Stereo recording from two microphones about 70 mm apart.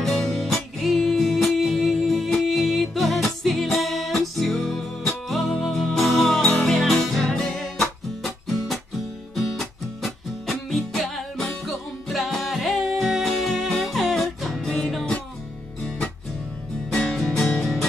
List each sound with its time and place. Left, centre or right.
0.0 s music: centre
16.9 s music: centre